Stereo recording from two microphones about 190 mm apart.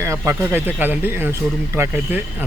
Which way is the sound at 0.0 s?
15° right (ahead or behind).